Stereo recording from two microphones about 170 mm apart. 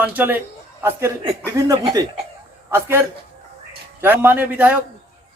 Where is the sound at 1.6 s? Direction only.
20° right (ahead or behind).